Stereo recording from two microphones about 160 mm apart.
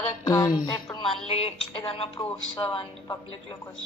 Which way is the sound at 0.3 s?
20° left (ahead or behind).